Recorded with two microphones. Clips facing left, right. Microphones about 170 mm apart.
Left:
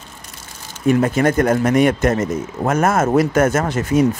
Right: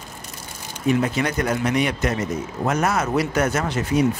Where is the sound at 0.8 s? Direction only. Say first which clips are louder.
Left 6 dB; 50° left (ahead or behind).